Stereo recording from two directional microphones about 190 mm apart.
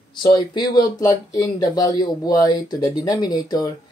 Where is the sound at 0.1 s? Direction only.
25° left (ahead or behind).